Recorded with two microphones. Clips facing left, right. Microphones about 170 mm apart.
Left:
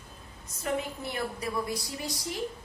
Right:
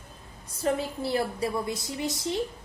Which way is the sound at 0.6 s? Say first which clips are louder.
Right 4 dB; 35° right (ahead or behind).